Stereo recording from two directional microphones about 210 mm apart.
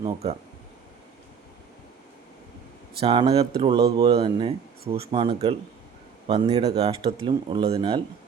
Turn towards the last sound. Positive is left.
turn(degrees=-25)  # may be behind; listen again after turning